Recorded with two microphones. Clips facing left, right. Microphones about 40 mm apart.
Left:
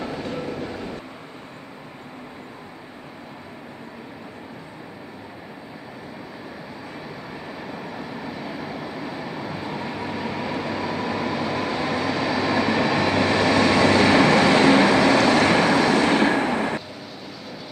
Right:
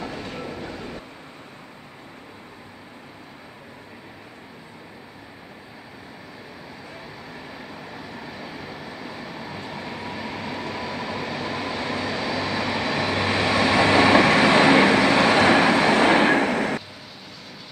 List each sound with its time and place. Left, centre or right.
0.0 s train: centre
7.7 s vehicle: centre
15.1 s train: centre